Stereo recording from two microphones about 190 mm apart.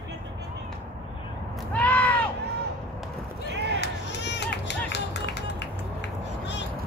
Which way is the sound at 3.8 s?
65° left (ahead or behind).